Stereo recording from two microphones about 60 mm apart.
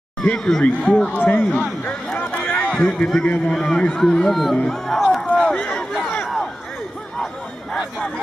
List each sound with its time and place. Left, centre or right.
0.2 s a man's voice: centre
2.1 s a sound: left
3.2 s a man's voice: centre
5.1 s run: centre